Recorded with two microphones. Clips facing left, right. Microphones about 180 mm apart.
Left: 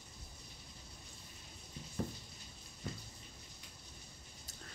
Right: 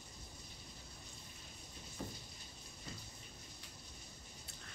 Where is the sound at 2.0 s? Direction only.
55° left (ahead or behind).